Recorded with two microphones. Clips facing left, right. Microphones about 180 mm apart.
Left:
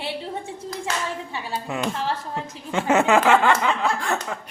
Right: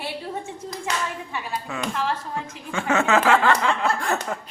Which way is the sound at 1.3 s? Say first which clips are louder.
Left 1 dB; 25° left (ahead or behind).